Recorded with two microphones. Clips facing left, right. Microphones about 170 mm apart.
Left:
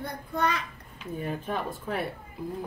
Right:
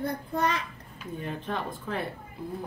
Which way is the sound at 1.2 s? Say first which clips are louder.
Left 2 dB; 5° left (ahead or behind).